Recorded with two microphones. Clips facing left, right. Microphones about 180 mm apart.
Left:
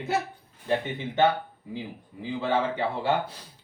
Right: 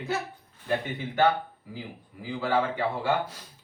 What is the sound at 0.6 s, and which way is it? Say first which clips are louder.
Speech: left 2 dB; 20° left (ahead or behind).